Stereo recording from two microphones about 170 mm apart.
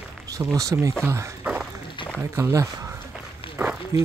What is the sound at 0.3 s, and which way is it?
Speech, 20° right (ahead or behind).